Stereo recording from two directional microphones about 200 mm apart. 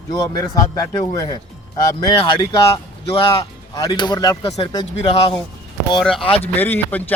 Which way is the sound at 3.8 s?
20° left (ahead or behind).